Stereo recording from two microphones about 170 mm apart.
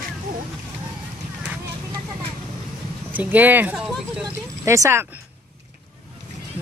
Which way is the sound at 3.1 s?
10° right (ahead or behind).